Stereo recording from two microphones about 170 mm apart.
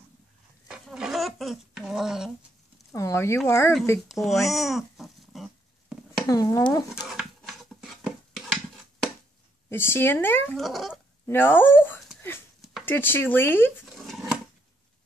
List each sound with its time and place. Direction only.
0.7 s a sound: 5° right (ahead or behind)
2.9 s speech: 15° left (ahead or behind)
4.1 s dog: centre (ahead or behind)
6.2 s speech: 20° left (ahead or behind)
6.9 s a sound: 5° right (ahead or behind)
9.7 s speech: 15° left (ahead or behind)
10.6 s a sound: centre (ahead or behind)
11.2 s speech: 10° left (ahead or behind)
13.9 s dishes: centre (ahead or behind)